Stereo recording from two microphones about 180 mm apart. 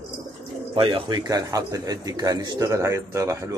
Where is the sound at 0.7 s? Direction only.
25° right (ahead or behind).